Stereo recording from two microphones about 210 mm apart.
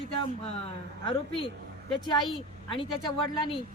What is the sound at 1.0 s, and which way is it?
A woman's voice, 25° left (ahead or behind).